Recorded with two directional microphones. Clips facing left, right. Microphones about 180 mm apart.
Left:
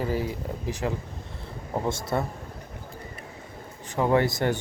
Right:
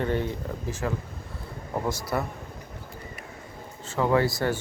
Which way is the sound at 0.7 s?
15° left (ahead or behind).